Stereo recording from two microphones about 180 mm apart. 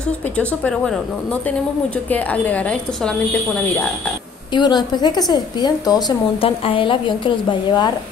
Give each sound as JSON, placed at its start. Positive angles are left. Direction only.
{"t": 0.4, "sound": "a woman's voice", "side_deg": 5}
{"t": 4.6, "sound": "a woman's voice", "side_deg": 20}